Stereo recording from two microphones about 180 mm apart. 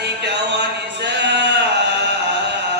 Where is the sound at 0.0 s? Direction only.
70° right (ahead or behind).